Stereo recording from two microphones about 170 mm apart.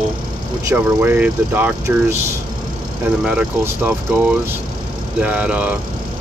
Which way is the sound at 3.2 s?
10° right (ahead or behind).